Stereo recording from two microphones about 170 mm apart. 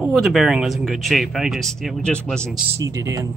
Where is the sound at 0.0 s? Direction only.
Centre (ahead or behind).